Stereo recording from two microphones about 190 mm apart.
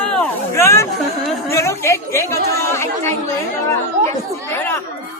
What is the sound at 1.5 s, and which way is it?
A woman's voice, 15° left (ahead or behind).